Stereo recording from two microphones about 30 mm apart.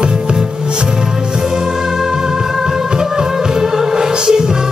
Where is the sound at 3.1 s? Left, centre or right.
Centre.